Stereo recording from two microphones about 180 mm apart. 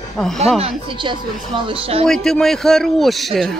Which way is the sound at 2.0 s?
5° left (ahead or behind).